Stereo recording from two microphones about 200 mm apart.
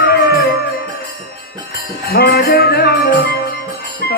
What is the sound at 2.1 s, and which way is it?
Music, 55° left (ahead or behind).